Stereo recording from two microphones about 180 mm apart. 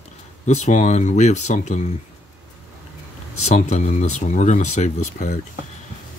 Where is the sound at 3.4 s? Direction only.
40° left (ahead or behind).